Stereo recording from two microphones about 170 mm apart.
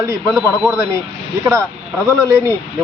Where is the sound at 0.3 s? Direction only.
Centre (ahead or behind).